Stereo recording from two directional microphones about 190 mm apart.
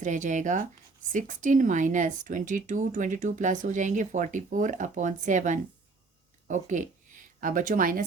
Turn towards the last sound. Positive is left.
turn(degrees=-45)  # may be behind; listen again after turning